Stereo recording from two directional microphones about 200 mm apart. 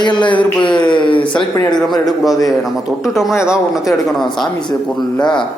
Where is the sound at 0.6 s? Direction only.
25° left (ahead or behind).